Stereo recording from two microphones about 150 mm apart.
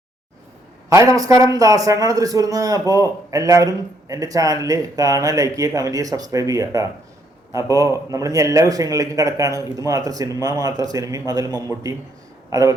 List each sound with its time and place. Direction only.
0.9 s a man's voice: 20° right (ahead or behind)